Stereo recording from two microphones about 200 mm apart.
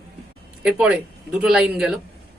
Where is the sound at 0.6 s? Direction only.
5° right (ahead or behind).